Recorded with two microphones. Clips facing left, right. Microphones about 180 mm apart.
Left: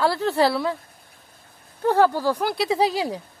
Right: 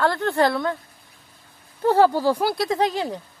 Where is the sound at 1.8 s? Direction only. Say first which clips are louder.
Right 2 dB; 10° right (ahead or behind).